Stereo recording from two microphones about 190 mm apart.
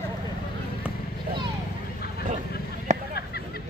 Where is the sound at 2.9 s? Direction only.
35° right (ahead or behind).